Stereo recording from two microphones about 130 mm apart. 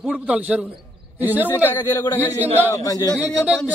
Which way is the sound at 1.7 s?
20° left (ahead or behind).